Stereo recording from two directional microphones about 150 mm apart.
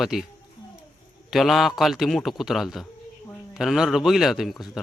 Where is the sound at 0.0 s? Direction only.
Centre (ahead or behind).